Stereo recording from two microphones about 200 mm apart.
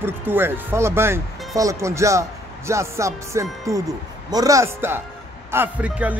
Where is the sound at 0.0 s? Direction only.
10° right (ahead or behind).